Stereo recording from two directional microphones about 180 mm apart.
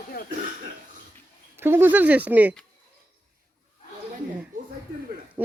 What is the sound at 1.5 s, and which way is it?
Speech, 15° right (ahead or behind).